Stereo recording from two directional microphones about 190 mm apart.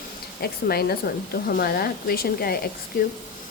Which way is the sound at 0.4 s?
55° left (ahead or behind).